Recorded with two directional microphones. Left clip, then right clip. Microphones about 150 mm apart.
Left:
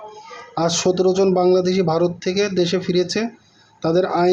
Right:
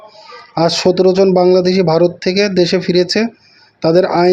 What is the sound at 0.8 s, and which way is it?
Speech, 30° right (ahead or behind).